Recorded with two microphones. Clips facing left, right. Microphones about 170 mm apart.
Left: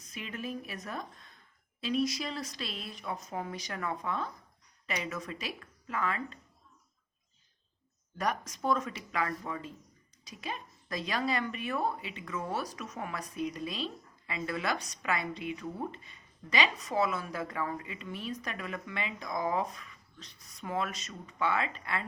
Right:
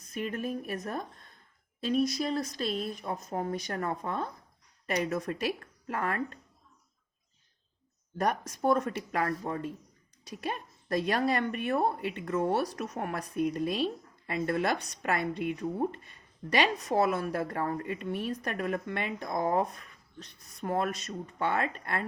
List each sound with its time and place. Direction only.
0.1 s a woman's voice: 50° right (ahead or behind)
8.2 s a woman's voice: 55° right (ahead or behind)